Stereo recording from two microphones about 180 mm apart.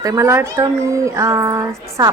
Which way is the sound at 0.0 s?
20° right (ahead or behind).